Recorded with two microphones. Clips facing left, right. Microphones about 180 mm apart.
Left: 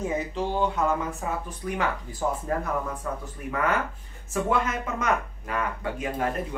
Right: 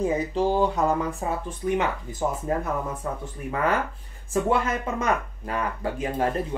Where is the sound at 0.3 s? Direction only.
35° right (ahead or behind).